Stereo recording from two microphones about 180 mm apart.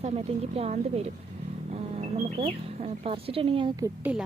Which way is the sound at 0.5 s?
35° right (ahead or behind).